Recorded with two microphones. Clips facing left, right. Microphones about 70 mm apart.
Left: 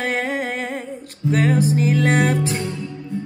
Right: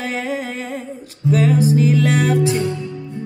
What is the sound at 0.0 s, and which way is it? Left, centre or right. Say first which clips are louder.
Music: left 1 dB; left.